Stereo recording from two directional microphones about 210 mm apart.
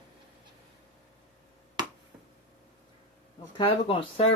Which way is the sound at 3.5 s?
25° left (ahead or behind).